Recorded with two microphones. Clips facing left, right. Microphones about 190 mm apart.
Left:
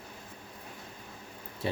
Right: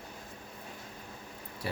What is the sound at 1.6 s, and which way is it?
Speech, 25° left (ahead or behind).